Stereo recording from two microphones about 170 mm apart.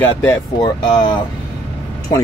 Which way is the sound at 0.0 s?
10° left (ahead or behind).